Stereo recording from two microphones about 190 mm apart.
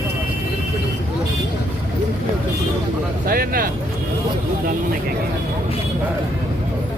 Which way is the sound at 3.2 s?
50° right (ahead or behind).